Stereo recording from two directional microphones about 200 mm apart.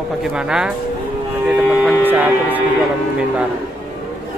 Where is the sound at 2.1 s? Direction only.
10° right (ahead or behind).